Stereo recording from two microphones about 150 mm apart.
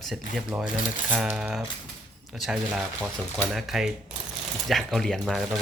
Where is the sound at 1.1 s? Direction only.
5° right (ahead or behind).